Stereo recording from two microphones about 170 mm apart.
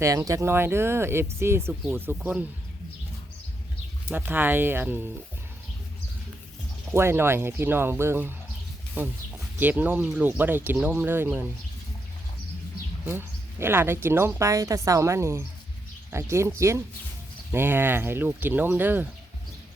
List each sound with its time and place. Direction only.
0.0 s speech: 20° right (ahead or behind)
4.1 s speech: 10° right (ahead or behind)
6.9 s speech: 15° right (ahead or behind)
13.1 s speech: 15° right (ahead or behind)